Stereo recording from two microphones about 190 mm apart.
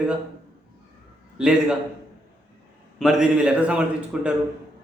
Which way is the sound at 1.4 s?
5° right (ahead or behind).